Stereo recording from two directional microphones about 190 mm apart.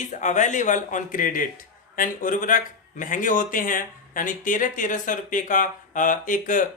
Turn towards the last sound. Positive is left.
turn(degrees=45)  # may be behind; listen again after turning